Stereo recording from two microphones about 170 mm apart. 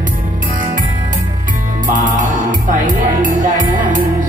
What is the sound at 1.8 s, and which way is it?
Music, 50° right (ahead or behind).